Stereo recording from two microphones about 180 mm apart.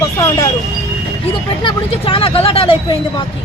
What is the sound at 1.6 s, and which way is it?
Speech, 30° left (ahead or behind).